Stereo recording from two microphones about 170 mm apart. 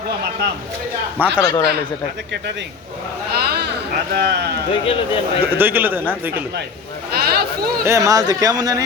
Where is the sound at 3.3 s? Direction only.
70° right (ahead or behind).